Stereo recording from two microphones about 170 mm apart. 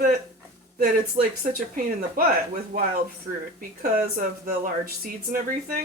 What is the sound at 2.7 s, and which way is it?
A woman's voice, 45° right (ahead or behind).